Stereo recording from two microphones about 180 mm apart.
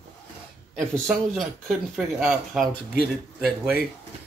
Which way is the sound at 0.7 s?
Centre (ahead or behind).